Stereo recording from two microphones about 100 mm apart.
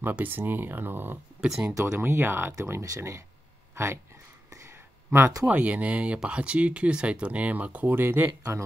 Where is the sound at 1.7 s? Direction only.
25° right (ahead or behind).